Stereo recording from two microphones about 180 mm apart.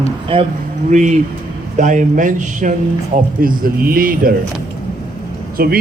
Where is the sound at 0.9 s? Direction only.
40° right (ahead or behind).